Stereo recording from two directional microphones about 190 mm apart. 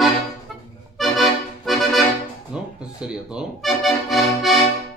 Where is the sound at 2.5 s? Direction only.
5° right (ahead or behind).